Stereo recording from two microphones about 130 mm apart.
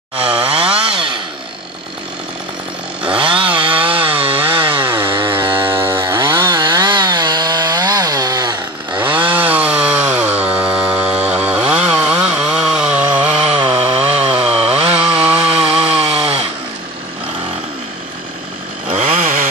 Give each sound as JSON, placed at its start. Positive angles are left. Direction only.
{"t": 0.2, "sound": "chainsaw", "side_deg": -45}
{"t": 3.2, "sound": "chainsaw", "side_deg": -40}
{"t": 8.9, "sound": "chainsaw", "side_deg": -15}
{"t": 13.3, "sound": "chainsaw", "side_deg": -50}
{"t": 18.9, "sound": "chainsaw", "side_deg": -50}
{"t": 19.1, "sound": "chainsaw", "side_deg": -75}